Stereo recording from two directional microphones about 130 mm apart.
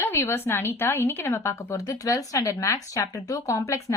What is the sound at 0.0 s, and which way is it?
A woman's voice, 20° left (ahead or behind).